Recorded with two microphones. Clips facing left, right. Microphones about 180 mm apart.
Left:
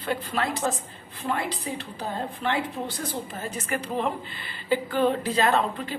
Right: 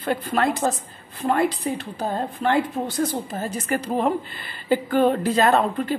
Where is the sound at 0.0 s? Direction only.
50° right (ahead or behind).